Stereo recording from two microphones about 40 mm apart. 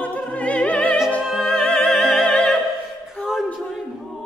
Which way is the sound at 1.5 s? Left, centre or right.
Left.